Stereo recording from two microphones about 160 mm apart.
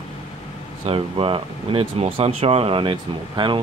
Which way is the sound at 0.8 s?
35° right (ahead or behind).